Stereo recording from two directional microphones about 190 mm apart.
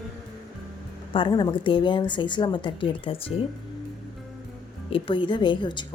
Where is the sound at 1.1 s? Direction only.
25° left (ahead or behind).